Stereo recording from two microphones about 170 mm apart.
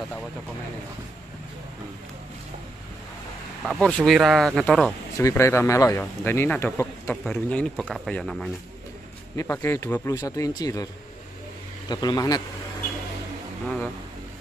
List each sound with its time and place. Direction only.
3.6 s speech: centre (ahead or behind)
5.1 s speech: 15° left (ahead or behind)
9.4 s speech: 15° left (ahead or behind)
11.9 s speech: 25° left (ahead or behind)